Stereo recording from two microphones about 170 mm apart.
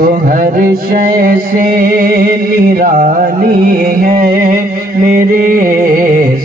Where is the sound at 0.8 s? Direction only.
55° right (ahead or behind).